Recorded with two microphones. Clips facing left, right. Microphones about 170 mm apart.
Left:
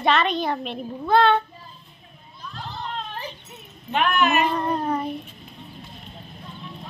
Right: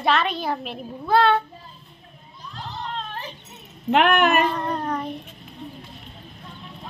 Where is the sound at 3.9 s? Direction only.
70° right (ahead or behind); by 4.5 s 55° right (ahead or behind).